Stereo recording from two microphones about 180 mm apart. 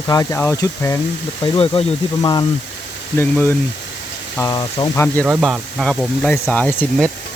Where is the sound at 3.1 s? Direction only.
10° left (ahead or behind).